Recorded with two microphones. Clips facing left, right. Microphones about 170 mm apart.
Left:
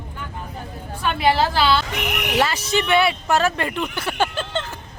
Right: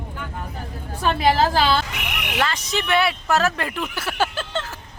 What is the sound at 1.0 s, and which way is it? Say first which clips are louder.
Speech: right 1 dB; 40° right (ahead or behind).